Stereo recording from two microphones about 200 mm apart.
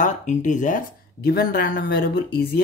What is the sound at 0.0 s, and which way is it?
Speech, 40° left (ahead or behind).